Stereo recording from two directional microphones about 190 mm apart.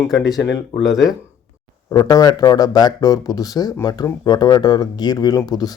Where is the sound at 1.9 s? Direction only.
20° left (ahead or behind).